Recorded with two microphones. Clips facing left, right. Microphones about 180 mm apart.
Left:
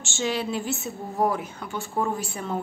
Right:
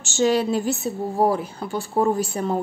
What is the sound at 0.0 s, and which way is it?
A woman's voice, 40° right (ahead or behind).